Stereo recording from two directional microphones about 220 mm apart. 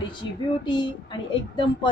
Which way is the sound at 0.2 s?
20° left (ahead or behind).